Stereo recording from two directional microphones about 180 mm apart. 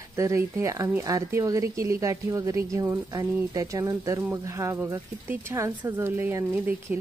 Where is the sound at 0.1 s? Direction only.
15° right (ahead or behind).